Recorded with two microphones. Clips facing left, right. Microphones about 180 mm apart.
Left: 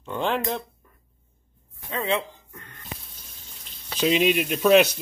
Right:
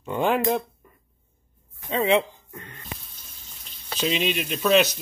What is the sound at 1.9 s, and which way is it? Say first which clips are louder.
Speech: right 5 dB; 20° right (ahead or behind).